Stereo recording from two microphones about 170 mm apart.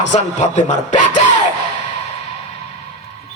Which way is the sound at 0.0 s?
45° left (ahead or behind).